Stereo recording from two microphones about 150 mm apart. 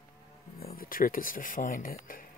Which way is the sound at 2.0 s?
65° left (ahead or behind).